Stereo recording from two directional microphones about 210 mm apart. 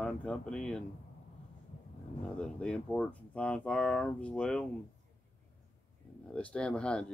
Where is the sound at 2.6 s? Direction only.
5° left (ahead or behind).